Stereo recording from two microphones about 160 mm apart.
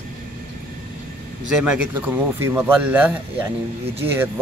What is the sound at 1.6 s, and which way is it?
Speech, 5° right (ahead or behind).